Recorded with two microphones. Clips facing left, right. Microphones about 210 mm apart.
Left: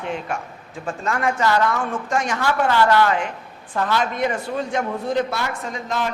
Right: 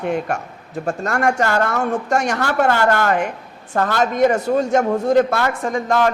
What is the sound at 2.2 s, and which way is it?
Speech, 65° right (ahead or behind).